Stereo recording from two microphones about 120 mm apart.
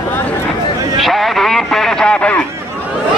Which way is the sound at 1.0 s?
Centre (ahead or behind).